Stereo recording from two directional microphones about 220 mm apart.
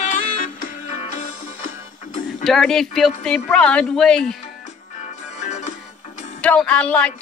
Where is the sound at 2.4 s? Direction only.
Centre (ahead or behind).